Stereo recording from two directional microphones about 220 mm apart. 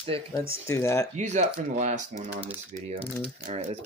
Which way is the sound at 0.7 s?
10° left (ahead or behind).